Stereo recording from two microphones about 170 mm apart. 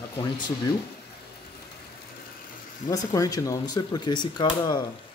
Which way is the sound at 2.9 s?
20° left (ahead or behind).